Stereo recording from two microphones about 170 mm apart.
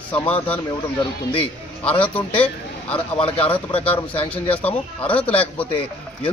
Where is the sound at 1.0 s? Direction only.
30° left (ahead or behind).